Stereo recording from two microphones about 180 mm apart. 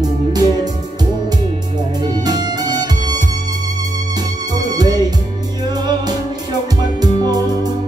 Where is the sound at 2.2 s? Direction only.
20° right (ahead or behind).